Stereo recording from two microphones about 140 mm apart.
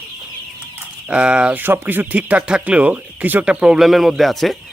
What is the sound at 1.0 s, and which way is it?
Speech, 10° right (ahead or behind).